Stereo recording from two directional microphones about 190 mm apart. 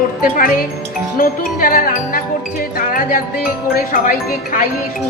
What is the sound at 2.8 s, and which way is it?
Music, 50° left (ahead or behind).